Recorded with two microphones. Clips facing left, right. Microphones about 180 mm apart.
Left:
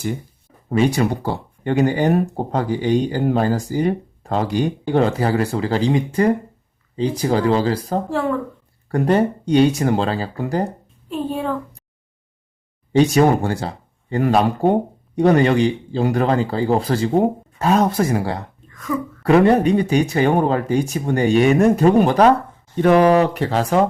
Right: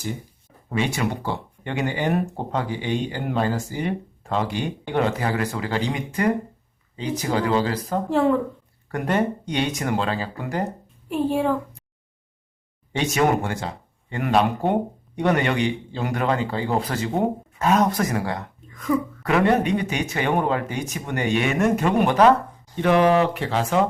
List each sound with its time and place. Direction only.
0.7 s speech: 40° left (ahead or behind)
8.1 s speech: 20° right (ahead or behind)
8.9 s speech: 30° left (ahead or behind)
11.1 s a woman's voice: 10° right (ahead or behind)
12.9 s speech: 35° left (ahead or behind)